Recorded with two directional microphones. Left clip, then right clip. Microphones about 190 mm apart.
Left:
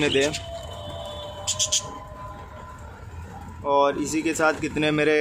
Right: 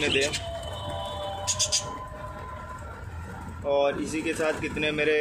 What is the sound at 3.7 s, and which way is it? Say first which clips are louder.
Speech: left 4 dB; 35° left (ahead or behind).